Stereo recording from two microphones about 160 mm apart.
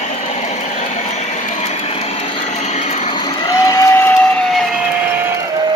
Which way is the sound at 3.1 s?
25° left (ahead or behind).